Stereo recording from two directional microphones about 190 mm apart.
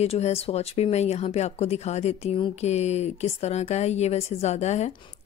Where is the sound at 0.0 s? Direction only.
35° left (ahead or behind).